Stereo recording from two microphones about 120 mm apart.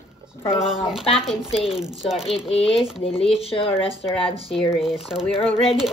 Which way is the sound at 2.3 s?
55° left (ahead or behind).